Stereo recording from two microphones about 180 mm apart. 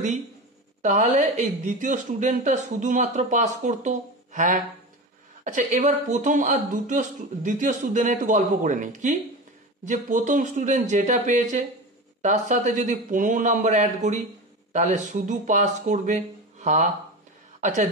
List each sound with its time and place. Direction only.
0.8 s a woman's voice: 40° right (ahead or behind)